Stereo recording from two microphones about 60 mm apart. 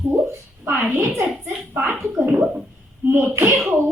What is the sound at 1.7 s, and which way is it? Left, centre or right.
A woman's voice, right.